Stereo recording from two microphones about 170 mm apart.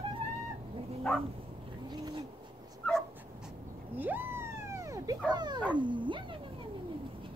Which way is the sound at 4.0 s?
10° right (ahead or behind).